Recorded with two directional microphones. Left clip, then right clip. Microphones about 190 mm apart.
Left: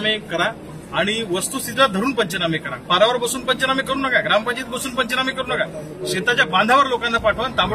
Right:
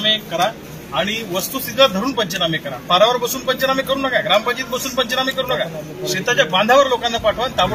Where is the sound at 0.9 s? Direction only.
15° left (ahead or behind).